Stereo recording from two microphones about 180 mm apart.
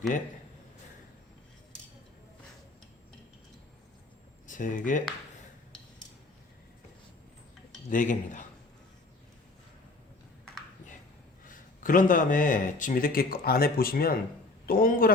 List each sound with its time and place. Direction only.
4.4 s speech: 45° left (ahead or behind)
7.9 s speech: 45° left (ahead or behind)
11.4 s speech: 50° left (ahead or behind)